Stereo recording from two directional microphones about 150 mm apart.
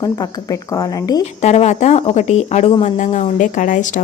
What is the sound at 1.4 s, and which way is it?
Speech, 50° left (ahead or behind).